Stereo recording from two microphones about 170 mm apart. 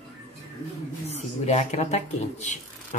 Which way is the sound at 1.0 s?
40° left (ahead or behind).